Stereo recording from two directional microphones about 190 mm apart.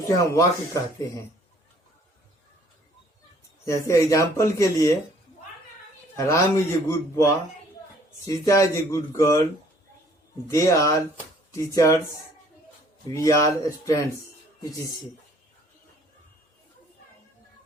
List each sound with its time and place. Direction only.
0.1 s speech: 15° left (ahead or behind)
3.7 s speech: 15° left (ahead or behind)
6.1 s speech: 15° left (ahead or behind)
10.5 s speech: 15° left (ahead or behind)
13.2 s speech: 15° left (ahead or behind)